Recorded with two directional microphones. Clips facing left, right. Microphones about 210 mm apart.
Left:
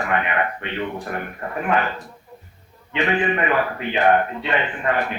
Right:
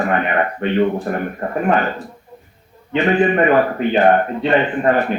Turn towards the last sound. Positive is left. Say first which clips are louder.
# right 7 dB
turn(degrees=-40)  # may be behind; listen again after turning